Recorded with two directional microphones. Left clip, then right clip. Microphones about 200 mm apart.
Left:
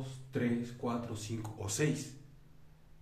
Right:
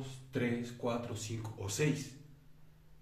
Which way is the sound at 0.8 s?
20° left (ahead or behind).